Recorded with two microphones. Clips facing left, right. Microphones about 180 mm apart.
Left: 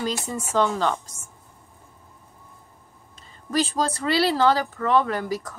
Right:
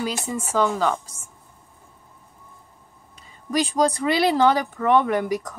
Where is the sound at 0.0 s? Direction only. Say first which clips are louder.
Right 1 dB; 10° right (ahead or behind).